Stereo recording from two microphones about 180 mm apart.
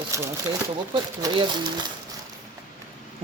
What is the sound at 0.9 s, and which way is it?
Speech, 25° right (ahead or behind).